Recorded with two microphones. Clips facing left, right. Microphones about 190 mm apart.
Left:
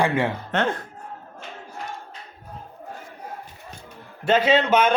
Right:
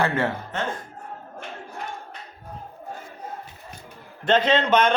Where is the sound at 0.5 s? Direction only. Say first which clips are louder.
Left 5 dB; 65° left (ahead or behind).